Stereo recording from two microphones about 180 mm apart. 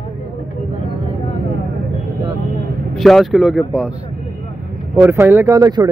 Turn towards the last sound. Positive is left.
turn(degrees=-20)  # may be behind; listen again after turning